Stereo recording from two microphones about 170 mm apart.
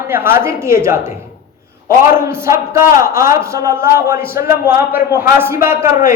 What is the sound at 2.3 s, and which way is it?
A man's voice, 15° right (ahead or behind).